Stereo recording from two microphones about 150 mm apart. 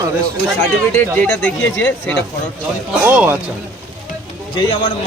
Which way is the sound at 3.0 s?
10° right (ahead or behind).